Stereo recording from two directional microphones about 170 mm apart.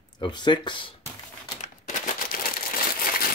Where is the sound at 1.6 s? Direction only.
45° left (ahead or behind).